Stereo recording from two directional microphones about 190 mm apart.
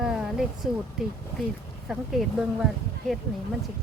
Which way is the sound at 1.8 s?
Centre (ahead or behind).